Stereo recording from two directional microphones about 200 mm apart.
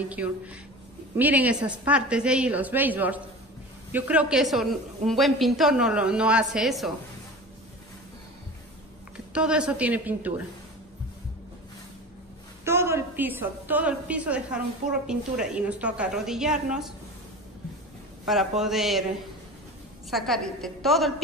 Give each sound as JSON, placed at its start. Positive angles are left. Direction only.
{"t": 0.1, "sound": "a woman's voice", "side_deg": -5}
{"t": 9.1, "sound": "a woman's voice", "side_deg": -5}
{"t": 12.6, "sound": "a woman's voice", "side_deg": -15}
{"t": 18.2, "sound": "a man's voice", "side_deg": 0}
{"t": 20.1, "sound": "a woman's voice", "side_deg": 0}